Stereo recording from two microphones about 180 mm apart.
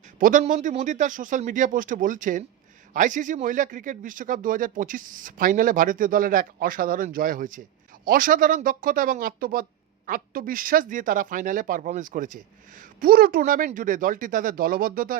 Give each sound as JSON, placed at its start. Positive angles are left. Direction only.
{"t": 0.2, "sound": "speech", "side_deg": -50}